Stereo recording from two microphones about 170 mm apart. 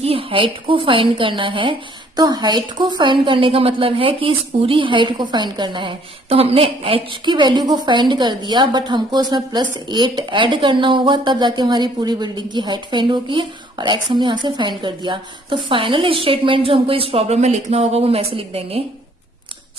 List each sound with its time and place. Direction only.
0.0 s a woman's voice: 35° right (ahead or behind)